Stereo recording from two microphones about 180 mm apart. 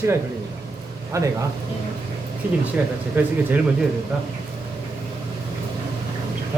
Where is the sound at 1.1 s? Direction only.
15° right (ahead or behind).